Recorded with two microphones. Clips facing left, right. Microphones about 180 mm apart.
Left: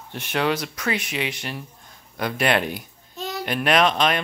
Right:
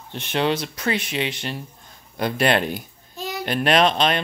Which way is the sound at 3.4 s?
30° right (ahead or behind).